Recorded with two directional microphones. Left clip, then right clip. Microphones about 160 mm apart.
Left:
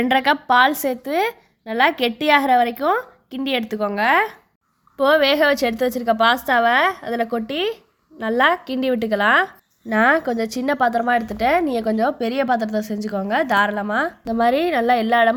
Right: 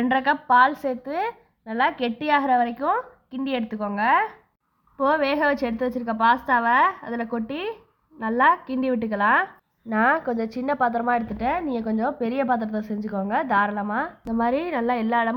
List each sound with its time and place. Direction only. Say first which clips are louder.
0.0 s a woman's voice: left 4 dB; 30° left (ahead or behind)
11.4 s a woman's voice: left 11 dB; 40° left (ahead or behind)